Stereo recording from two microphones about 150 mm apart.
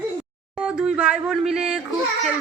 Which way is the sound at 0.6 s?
5° right (ahead or behind).